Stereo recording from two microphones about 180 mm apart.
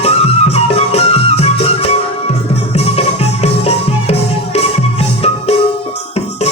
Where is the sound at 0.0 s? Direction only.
35° left (ahead or behind).